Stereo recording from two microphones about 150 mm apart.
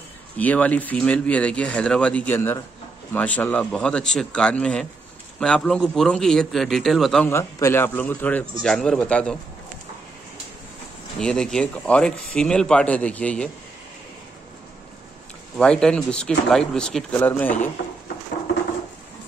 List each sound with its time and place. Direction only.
0.4 s speech: 10° left (ahead or behind)
7.2 s speech: 20° left (ahead or behind)
11.1 s speech: 5° left (ahead or behind)
15.5 s speech: 5° left (ahead or behind)